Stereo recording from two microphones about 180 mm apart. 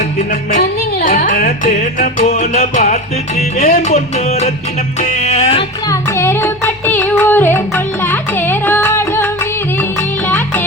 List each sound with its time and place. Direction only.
0.3 s music: 50° left (ahead or behind)
3.9 s music: 35° left (ahead or behind)
5.9 s music: 15° left (ahead or behind)